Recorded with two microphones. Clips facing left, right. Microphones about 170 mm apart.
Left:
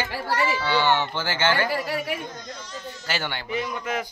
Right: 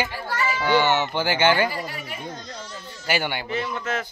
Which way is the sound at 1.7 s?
75° left (ahead or behind).